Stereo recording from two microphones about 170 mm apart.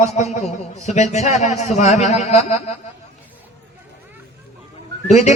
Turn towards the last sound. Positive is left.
turn(degrees=40)  # may be behind; listen again after turning